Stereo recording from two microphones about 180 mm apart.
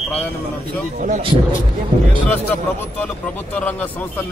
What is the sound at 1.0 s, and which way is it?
Speech, 45° right (ahead or behind).